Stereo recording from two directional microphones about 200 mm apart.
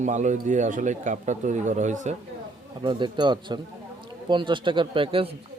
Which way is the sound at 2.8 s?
20° right (ahead or behind).